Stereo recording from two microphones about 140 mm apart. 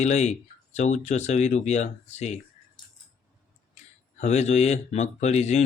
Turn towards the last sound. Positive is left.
turn(degrees=55)  # may be behind; listen again after turning